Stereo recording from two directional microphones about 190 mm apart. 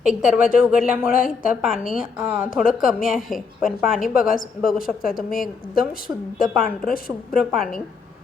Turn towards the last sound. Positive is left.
turn(degrees=50)  # may be behind; listen again after turning